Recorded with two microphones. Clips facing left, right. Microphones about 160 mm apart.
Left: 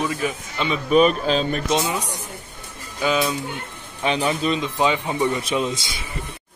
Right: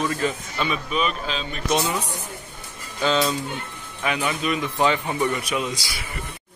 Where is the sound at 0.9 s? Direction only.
45° left (ahead or behind).